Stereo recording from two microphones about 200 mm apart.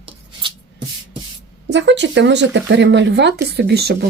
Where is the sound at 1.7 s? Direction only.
60° right (ahead or behind).